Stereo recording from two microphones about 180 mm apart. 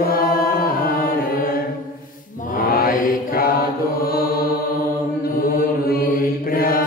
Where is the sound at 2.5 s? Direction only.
55° left (ahead or behind).